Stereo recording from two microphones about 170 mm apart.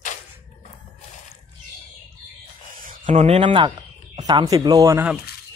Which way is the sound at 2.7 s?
55° right (ahead or behind).